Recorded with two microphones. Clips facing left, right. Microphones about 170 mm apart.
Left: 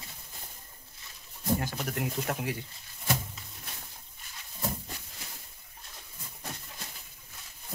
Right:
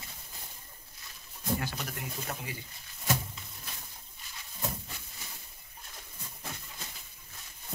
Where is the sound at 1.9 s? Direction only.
65° left (ahead or behind).